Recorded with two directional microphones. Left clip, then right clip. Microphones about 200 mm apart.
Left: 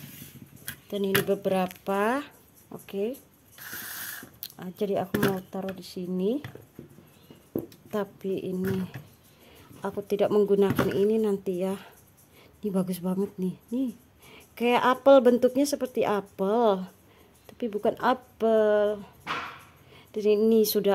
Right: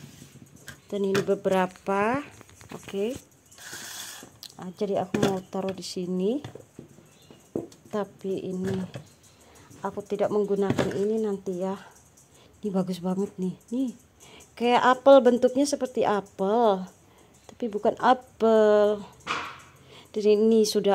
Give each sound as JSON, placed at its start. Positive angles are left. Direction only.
{"t": 0.7, "sound": "speech", "side_deg": 0}
{"t": 4.4, "sound": "speech", "side_deg": 5}
{"t": 5.5, "sound": "speech", "side_deg": -10}
{"t": 6.1, "sound": "speech", "side_deg": 0}
{"t": 7.9, "sound": "speech", "side_deg": 5}
{"t": 18.5, "sound": "a woman's voice", "side_deg": -15}